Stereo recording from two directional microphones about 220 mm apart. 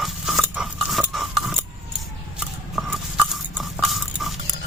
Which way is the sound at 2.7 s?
Centre (ahead or behind).